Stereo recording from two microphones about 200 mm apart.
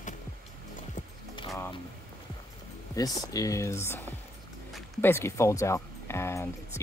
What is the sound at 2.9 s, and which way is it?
Speech, 20° left (ahead or behind).